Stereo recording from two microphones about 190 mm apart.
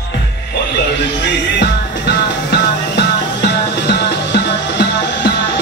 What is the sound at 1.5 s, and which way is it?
Music, 60° left (ahead or behind).